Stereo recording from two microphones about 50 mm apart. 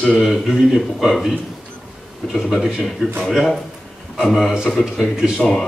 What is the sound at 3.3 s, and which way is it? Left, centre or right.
A man's voice, centre.